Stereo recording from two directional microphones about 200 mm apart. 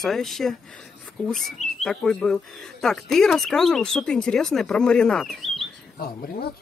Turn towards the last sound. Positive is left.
turn(degrees=45)  # may be behind; listen again after turning